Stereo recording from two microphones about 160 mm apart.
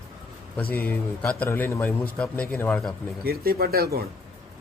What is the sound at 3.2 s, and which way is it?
Speech, 75° right (ahead or behind).